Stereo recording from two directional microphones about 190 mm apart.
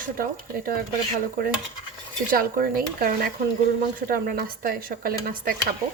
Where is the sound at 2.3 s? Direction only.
50° right (ahead or behind).